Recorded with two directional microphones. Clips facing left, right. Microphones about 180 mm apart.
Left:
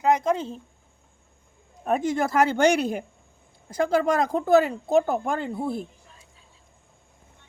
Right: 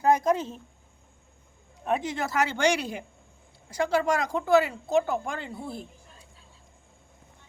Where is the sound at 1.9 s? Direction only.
50° left (ahead or behind).